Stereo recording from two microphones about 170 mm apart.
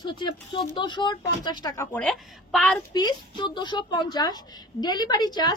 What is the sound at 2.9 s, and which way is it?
A woman's voice, 25° left (ahead or behind).